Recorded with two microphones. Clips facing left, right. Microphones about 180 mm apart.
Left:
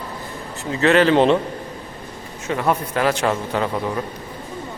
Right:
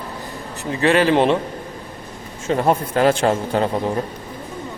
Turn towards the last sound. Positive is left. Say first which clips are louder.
# right 3 dB
turn(degrees=-35)  # may be behind; listen again after turning